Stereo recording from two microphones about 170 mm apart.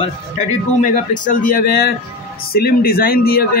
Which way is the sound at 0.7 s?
45° left (ahead or behind).